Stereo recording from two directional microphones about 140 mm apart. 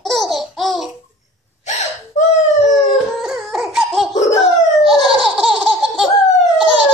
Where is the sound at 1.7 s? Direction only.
55° left (ahead or behind).